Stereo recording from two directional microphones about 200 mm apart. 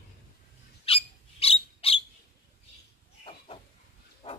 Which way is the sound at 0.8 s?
30° left (ahead or behind).